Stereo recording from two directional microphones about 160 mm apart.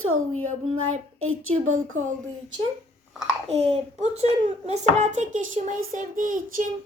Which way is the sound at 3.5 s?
45° right (ahead or behind).